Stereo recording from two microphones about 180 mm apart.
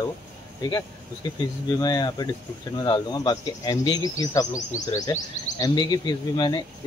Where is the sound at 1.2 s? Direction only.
25° left (ahead or behind).